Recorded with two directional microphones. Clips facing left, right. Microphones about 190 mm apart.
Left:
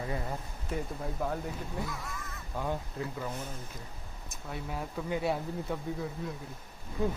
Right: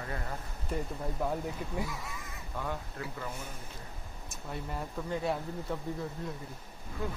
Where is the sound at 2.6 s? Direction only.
20° left (ahead or behind).